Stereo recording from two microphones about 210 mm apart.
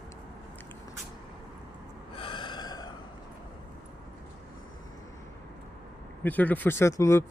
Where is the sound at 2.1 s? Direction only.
25° left (ahead or behind).